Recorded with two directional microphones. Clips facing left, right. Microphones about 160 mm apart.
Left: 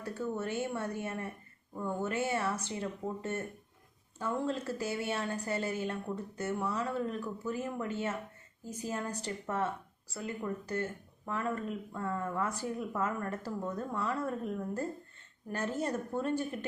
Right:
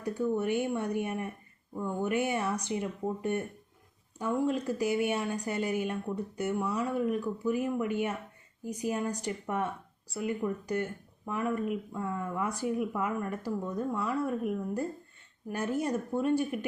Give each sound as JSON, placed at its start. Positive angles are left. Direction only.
{"t": 0.0, "sound": "a woman's voice", "side_deg": -15}